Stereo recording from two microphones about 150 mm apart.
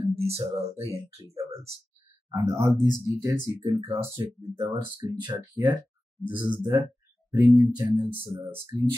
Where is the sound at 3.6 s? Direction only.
35° right (ahead or behind).